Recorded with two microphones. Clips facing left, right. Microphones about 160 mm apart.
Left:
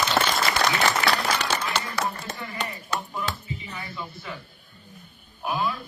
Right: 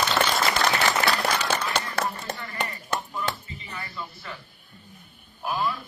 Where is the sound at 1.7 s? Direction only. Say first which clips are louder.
Even; 55° right (ahead or behind).